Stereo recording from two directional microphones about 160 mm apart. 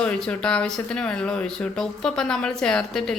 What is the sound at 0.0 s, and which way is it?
Speech, 5° left (ahead or behind).